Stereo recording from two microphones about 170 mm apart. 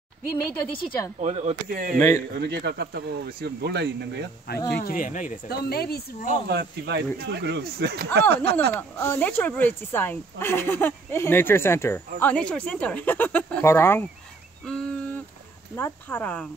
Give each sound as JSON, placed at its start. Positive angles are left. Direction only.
{"t": 0.6, "sound": "a woman's voice", "side_deg": 30}
{"t": 1.2, "sound": "speech", "side_deg": -40}
{"t": 1.7, "sound": "speech", "side_deg": -55}
{"t": 2.0, "sound": "speech", "side_deg": 15}
{"t": 2.3, "sound": "speech", "side_deg": -75}
{"t": 4.6, "sound": "speech", "side_deg": 65}
{"t": 6.5, "sound": "speech", "side_deg": -80}
{"t": 8.7, "sound": "speech", "side_deg": 10}
{"t": 14.7, "sound": "a sound", "side_deg": 5}
{"t": 15.7, "sound": "speech", "side_deg": 15}